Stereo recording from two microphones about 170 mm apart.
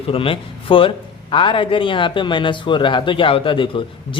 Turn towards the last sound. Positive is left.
turn(degrees=30)  # may be behind; listen again after turning